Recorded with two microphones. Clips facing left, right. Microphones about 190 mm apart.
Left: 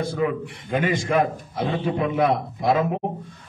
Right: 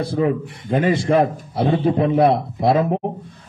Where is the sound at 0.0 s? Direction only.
35° right (ahead or behind).